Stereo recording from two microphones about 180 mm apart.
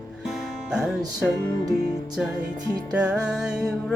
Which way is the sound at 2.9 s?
5° right (ahead or behind).